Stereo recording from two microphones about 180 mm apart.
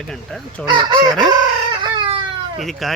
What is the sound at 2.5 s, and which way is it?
Speech, centre (ahead or behind).